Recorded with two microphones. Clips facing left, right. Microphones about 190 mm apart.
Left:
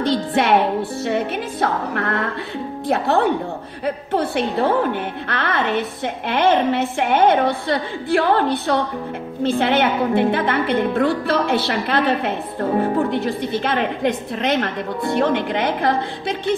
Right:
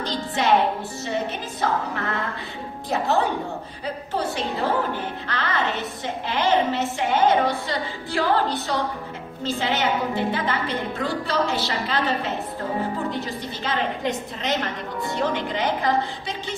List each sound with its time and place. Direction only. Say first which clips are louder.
0.0 s music: left 6 dB; 60° left (ahead or behind)
1.0 s a woman's voice: left 2 dB; 60° left (ahead or behind)